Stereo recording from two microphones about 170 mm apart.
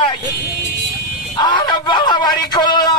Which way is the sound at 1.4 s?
25° left (ahead or behind).